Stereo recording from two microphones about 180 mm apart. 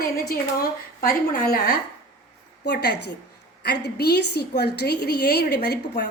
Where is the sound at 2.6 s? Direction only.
70° left (ahead or behind).